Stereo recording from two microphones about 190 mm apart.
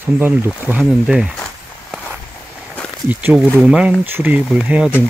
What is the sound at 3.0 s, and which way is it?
Speech, 5° right (ahead or behind).